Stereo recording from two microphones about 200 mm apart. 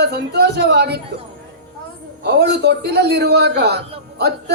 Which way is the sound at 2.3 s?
55° right (ahead or behind).